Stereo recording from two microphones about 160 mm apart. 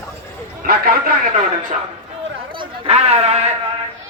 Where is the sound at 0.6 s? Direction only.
65° right (ahead or behind).